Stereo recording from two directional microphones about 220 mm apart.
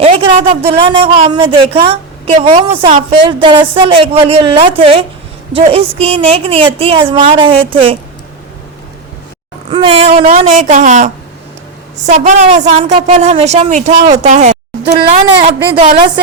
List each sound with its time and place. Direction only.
0.0 s a woman's voice: 25° right (ahead or behind)
9.6 s a woman's voice: 25° right (ahead or behind)